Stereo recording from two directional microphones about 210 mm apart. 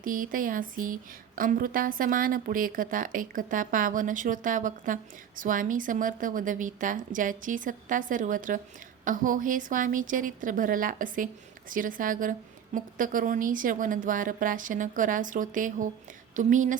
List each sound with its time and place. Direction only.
0.0 s a woman's voice: 40° right (ahead or behind)